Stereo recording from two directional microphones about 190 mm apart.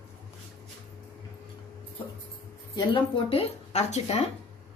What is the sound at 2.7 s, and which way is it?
A woman's voice, 25° left (ahead or behind).